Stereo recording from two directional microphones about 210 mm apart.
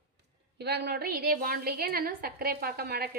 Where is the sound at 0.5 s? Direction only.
50° right (ahead or behind).